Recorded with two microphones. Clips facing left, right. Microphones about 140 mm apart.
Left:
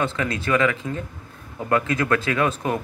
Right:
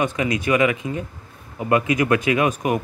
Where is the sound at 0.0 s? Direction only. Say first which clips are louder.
Right 3 dB; 15° right (ahead or behind).